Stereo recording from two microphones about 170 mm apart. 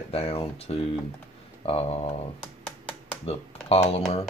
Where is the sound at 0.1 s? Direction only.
35° left (ahead or behind).